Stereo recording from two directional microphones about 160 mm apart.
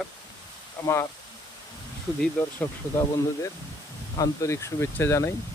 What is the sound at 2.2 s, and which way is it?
Speech, 10° left (ahead or behind).